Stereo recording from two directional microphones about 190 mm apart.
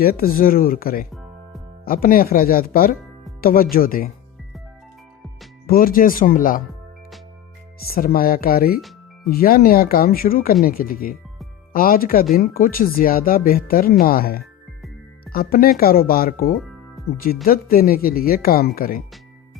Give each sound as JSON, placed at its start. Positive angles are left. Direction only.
{"t": 0.0, "sound": "speech", "side_deg": 50}
{"t": 5.6, "sound": "speech", "side_deg": 50}
{"t": 7.9, "sound": "speech", "side_deg": 50}